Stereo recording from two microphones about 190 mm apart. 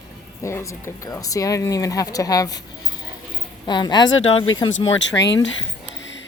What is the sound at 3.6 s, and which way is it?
Speech, 25° left (ahead or behind).